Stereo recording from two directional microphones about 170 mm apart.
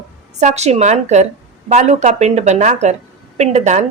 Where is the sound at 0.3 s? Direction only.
40° right (ahead or behind).